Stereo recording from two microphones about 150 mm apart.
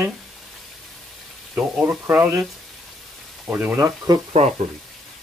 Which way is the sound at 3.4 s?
10° right (ahead or behind).